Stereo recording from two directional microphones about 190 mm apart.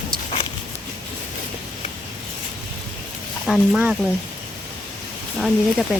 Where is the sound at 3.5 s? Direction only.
5° right (ahead or behind).